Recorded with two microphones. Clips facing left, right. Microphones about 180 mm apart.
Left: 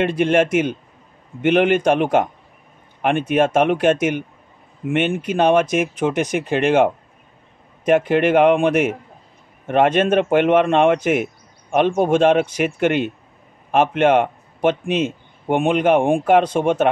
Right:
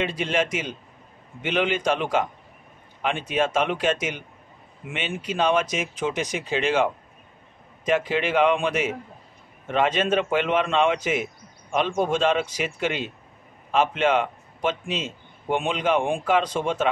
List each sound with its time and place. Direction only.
0.0 s a man's voice: 55° left (ahead or behind)